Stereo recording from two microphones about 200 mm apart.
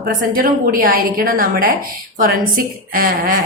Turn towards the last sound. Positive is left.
turn(degrees=-45)  # may be behind; listen again after turning